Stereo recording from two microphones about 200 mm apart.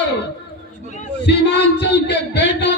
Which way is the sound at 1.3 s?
60° left (ahead or behind).